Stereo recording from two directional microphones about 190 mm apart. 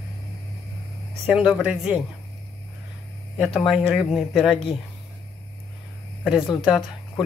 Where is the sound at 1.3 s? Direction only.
5° right (ahead or behind).